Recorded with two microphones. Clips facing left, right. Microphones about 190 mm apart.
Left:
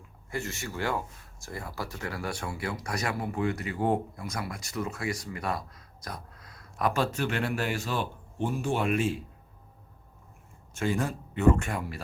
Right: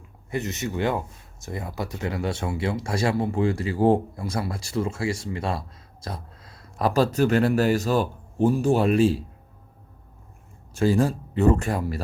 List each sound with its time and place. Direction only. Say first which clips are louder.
0.3 s speech: right 7 dB; 20° right (ahead or behind)
10.8 s speech: right 8 dB; 35° right (ahead or behind)